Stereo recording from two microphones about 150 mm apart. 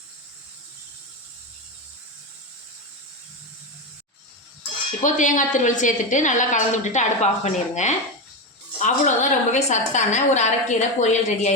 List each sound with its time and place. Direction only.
5.0 s a woman's voice: 55° left (ahead or behind)